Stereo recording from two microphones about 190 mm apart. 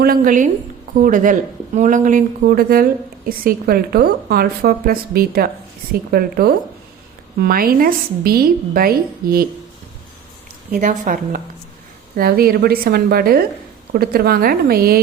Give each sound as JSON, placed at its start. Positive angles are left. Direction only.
{"t": 0.0, "sound": "speech", "side_deg": -50}
{"t": 10.7, "sound": "speech", "side_deg": -40}